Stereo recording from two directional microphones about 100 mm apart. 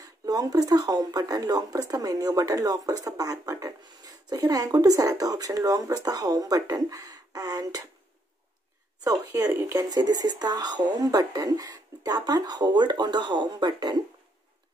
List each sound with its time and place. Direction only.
0.0 s speech: 40° right (ahead or behind)
9.0 s speech: 35° right (ahead or behind)